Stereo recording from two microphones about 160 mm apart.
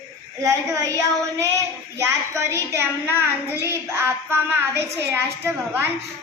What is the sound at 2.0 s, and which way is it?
A woman's voice, 15° right (ahead or behind).